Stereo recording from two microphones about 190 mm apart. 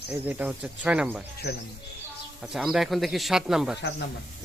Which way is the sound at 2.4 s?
Centre (ahead or behind).